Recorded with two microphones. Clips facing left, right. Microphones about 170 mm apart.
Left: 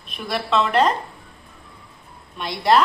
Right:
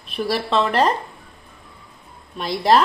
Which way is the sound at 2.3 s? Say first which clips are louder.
Right 1 dB; 35° right (ahead or behind).